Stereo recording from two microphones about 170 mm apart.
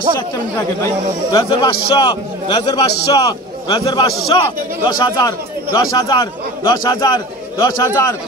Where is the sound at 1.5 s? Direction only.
30° left (ahead or behind).